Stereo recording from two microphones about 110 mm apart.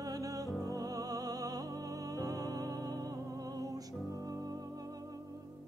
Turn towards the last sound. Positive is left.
turn(degrees=-35)  # may be behind; listen again after turning